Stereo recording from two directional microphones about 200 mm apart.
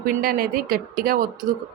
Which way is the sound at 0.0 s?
45° right (ahead or behind).